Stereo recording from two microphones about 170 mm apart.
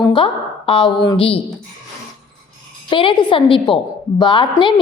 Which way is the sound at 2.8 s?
30° left (ahead or behind).